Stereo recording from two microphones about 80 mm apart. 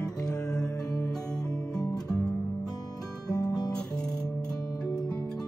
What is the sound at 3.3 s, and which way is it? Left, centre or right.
Guitar, left.